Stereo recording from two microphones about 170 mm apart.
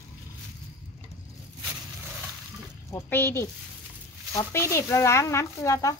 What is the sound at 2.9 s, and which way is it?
Speech, 15° left (ahead or behind).